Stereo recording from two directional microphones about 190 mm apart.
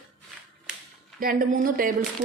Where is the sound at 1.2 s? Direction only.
45° right (ahead or behind).